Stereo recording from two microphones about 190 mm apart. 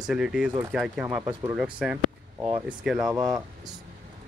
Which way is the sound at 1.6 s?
5° right (ahead or behind).